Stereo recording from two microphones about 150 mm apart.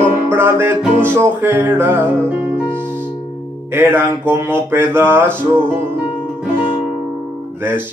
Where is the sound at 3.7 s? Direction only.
15° right (ahead or behind).